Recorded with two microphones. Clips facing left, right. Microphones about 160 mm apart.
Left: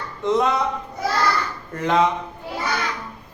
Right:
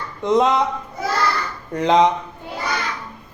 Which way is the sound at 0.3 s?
20° right (ahead or behind).